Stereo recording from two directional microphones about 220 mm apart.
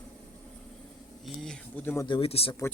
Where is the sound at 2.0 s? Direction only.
25° left (ahead or behind).